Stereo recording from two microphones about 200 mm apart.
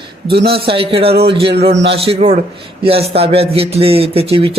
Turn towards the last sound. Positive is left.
turn(degrees=-30)  # may be behind; listen again after turning